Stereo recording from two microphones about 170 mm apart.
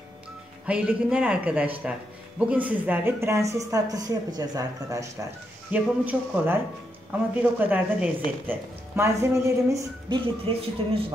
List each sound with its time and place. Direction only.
0.7 s a man's voice: 5° right (ahead or behind); by 10.5 s 25° right (ahead or behind)